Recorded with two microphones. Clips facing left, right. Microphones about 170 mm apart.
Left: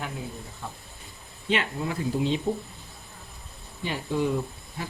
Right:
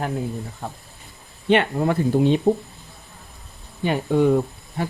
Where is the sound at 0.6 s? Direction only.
50° right (ahead or behind).